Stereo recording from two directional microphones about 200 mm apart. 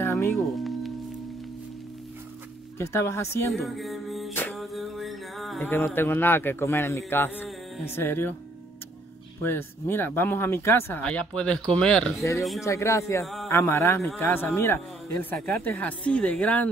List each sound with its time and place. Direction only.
0.0 s music: 10° left (ahead or behind)
0.6 s music: centre (ahead or behind)
2.8 s speech: 15° left (ahead or behind)
3.5 s music: centre (ahead or behind)
5.6 s speech: 10° left (ahead or behind)
9.4 s speech: 10° left (ahead or behind)
12.2 s speech: 15° left (ahead or behind)
13.2 s speech: centre (ahead or behind)
13.5 s speech: 10° left (ahead or behind)